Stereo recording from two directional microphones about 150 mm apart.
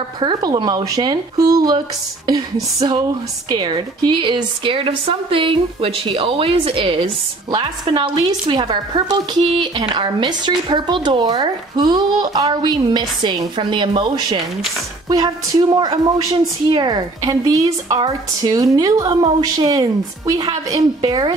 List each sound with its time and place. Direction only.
0.2 s a woman's voice: 30° right (ahead or behind)